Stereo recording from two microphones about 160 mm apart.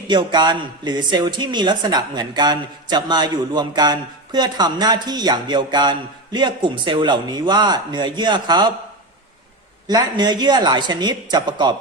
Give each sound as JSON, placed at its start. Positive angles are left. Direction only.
{"t": 0.1, "sound": "a man's voice", "side_deg": -30}
{"t": 9.8, "sound": "a man's voice", "side_deg": -25}